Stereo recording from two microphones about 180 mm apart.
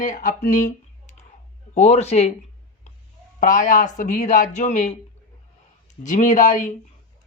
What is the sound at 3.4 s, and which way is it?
Speech, 45° left (ahead or behind).